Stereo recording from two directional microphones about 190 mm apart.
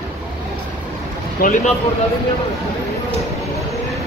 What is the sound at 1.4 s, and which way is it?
Speech, 40° left (ahead or behind).